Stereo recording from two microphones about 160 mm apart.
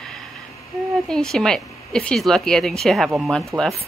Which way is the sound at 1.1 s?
5° left (ahead or behind).